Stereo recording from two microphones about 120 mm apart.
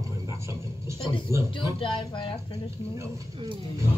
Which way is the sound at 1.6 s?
45° left (ahead or behind).